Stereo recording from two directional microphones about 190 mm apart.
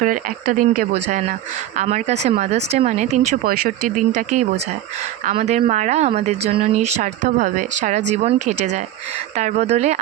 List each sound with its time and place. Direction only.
0.0 s speech: 45° right (ahead or behind)